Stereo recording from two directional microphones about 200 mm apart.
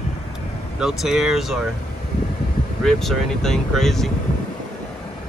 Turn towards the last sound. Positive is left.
turn(degrees=0)  # may be behind; listen again after turning